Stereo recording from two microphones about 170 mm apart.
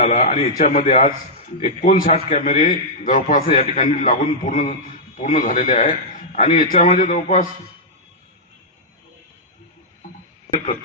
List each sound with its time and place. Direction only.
0.0 s a man's voice: 50° left (ahead or behind)